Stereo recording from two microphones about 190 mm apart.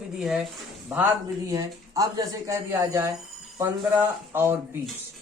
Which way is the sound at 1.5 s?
20° right (ahead or behind).